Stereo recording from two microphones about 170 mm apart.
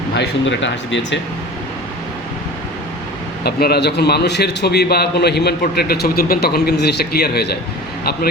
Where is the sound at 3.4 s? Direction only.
70° left (ahead or behind).